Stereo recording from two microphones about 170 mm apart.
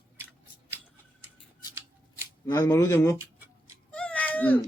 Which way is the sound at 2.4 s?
15° left (ahead or behind).